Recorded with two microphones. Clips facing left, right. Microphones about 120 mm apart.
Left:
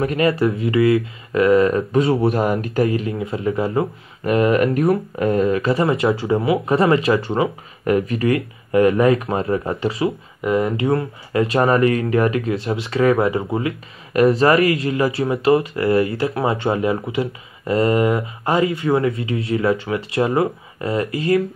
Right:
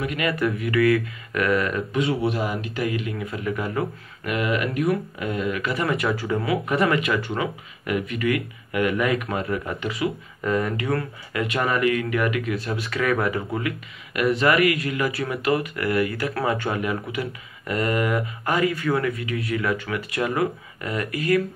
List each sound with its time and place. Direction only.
0.0 s speech: 35° left (ahead or behind)
2.3 s speech: 45° left (ahead or behind)
2.8 s speech: 35° left (ahead or behind)
4.7 s speech: 30° left (ahead or behind)
5.2 s speech: 40° left (ahead or behind)